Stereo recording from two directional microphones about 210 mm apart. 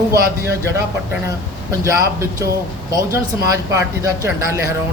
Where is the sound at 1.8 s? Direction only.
15° right (ahead or behind).